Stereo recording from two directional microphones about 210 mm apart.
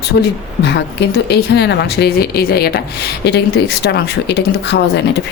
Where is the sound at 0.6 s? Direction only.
55° left (ahead or behind).